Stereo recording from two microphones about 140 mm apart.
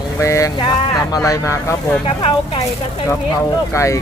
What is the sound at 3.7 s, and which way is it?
Speech, 20° left (ahead or behind).